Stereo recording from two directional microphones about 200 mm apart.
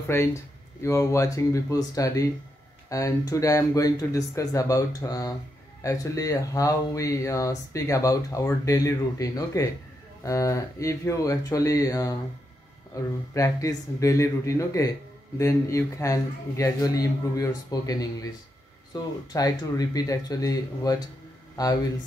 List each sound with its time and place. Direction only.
0.1 s speech: 15° left (ahead or behind)